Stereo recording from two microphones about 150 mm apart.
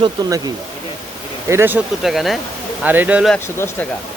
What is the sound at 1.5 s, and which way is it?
Speech, 15° right (ahead or behind).